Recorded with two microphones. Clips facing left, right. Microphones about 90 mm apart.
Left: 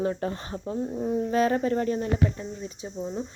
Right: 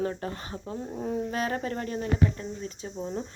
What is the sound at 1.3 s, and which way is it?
Speech, 30° left (ahead or behind).